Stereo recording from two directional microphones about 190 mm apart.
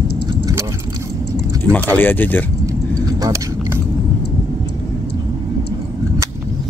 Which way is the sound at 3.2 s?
15° right (ahead or behind).